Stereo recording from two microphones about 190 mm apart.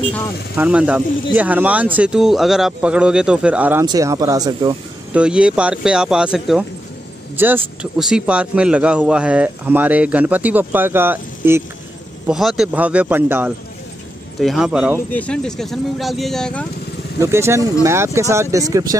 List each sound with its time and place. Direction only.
0.6 s speech: 5° right (ahead or behind)
3.8 s speech: 20° right (ahead or behind)
5.1 s a man's voice: 5° right (ahead or behind)
15.0 s speech: 5° left (ahead or behind)
17.2 s a man's voice: 15° right (ahead or behind)